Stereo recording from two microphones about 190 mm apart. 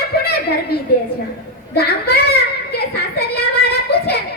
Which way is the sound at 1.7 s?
60° left (ahead or behind).